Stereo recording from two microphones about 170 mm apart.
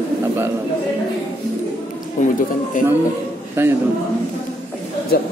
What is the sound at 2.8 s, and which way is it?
Speech, 50° left (ahead or behind).